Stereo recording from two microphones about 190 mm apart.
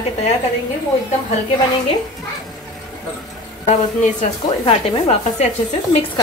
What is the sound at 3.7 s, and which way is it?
Speech, 35° left (ahead or behind).